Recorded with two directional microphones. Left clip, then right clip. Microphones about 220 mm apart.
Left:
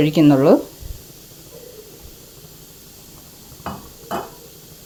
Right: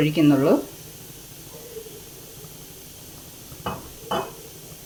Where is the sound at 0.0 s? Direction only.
30° left (ahead or behind).